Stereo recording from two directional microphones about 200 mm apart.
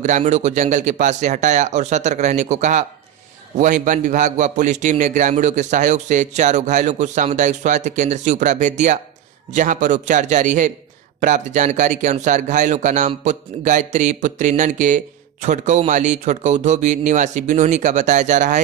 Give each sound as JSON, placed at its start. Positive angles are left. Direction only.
{"t": 0.0, "sound": "a man's voice", "side_deg": -35}